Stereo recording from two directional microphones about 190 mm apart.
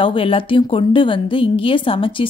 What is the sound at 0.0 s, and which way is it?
A woman's voice, 30° left (ahead or behind).